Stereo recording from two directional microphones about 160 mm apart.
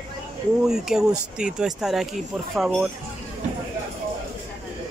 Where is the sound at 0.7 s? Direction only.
5° right (ahead or behind).